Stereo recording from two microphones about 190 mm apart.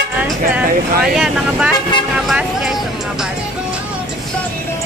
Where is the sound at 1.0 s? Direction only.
5° right (ahead or behind).